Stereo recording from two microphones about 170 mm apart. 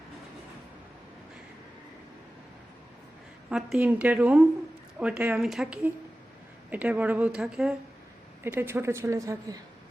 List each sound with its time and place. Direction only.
3.5 s speech: 5° right (ahead or behind)